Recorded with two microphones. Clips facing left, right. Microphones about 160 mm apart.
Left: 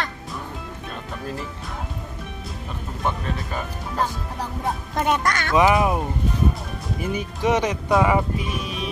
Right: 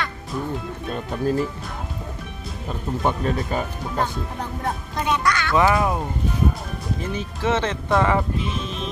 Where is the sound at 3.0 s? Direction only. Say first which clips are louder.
Right 3 dB; 30° right (ahead or behind).